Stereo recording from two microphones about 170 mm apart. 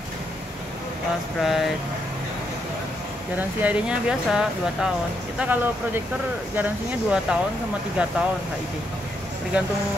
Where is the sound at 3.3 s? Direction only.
10° right (ahead or behind).